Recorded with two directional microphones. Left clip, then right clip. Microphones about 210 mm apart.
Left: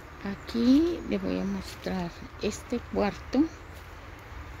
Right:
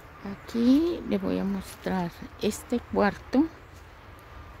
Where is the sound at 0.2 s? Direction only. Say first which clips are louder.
Right 1 dB; 10° right (ahead or behind).